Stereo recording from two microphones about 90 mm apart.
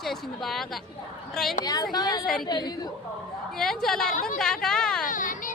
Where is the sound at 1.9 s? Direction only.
50° left (ahead or behind).